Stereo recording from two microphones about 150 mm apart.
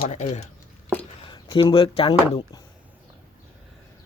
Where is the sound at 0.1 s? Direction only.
50° left (ahead or behind).